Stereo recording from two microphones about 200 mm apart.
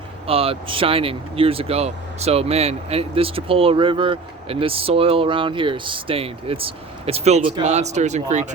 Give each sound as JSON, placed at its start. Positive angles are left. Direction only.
{"t": 0.3, "sound": "speech", "side_deg": -30}